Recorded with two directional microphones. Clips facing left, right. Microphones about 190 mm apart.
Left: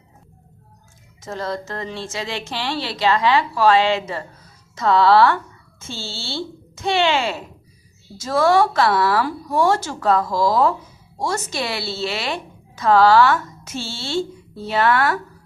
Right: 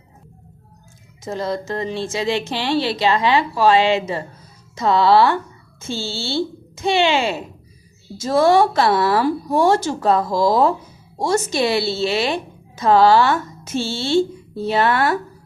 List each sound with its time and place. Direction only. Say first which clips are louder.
1.2 s a woman's voice: right 3 dB; 15° right (ahead or behind)